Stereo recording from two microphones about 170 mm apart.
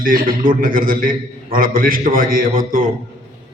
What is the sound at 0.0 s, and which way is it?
A man's voice, 55° right (ahead or behind).